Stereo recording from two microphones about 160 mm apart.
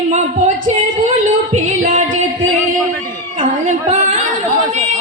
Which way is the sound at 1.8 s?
50° right (ahead or behind).